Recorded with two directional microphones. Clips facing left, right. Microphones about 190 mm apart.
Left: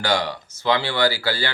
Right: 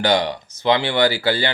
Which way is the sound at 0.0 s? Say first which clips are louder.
Right 4 dB; 20° right (ahead or behind).